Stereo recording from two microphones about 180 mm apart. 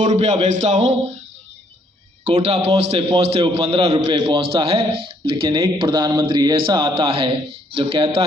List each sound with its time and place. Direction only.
0.0 s a man's voice: 40° right (ahead or behind)
2.2 s a man's voice: 35° right (ahead or behind)